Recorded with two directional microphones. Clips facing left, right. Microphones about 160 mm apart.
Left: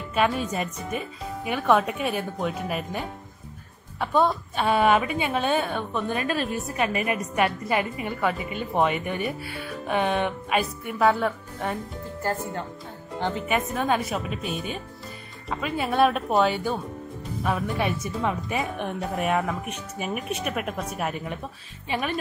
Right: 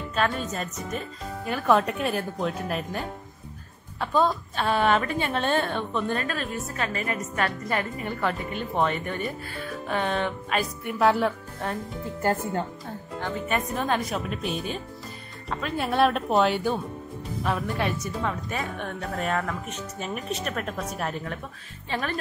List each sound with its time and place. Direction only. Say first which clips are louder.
0.1 s a woman's voice: left 3 dB; 10° left (ahead or behind)
4.2 s a woman's voice: left 1 dB; 5° left (ahead or behind)
12.2 s speech: right 3 dB; 25° right (ahead or behind)
13.5 s speech: left 1 dB; 5° left (ahead or behind)
18.2 s a woman's voice: left 5 dB; 15° left (ahead or behind)